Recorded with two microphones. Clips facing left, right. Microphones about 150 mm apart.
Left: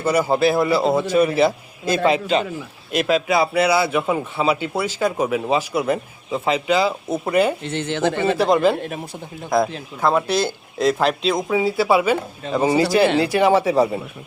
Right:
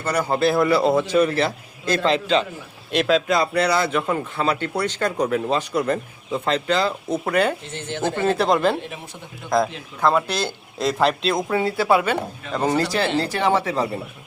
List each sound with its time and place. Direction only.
0.0 s a man's voice: 10° left (ahead or behind)
3.0 s a man's voice: 5° left (ahead or behind)
7.6 s speech: 75° left (ahead or behind)
8.4 s a man's voice: centre (ahead or behind)